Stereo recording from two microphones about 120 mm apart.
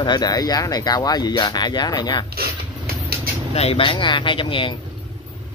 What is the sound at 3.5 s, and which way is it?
Speech, 55° left (ahead or behind).